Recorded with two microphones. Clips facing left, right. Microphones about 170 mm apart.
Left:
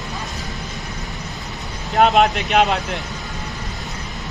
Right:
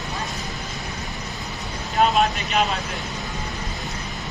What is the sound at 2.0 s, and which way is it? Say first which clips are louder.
Speech: left 5 dB; 75° left (ahead or behind).